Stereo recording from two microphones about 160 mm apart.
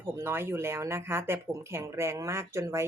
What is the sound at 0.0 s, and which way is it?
A woman's voice, 15° right (ahead or behind).